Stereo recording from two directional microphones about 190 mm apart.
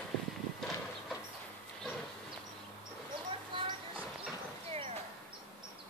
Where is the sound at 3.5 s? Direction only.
25° right (ahead or behind).